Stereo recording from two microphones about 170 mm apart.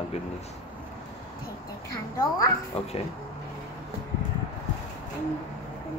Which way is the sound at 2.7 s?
35° left (ahead or behind).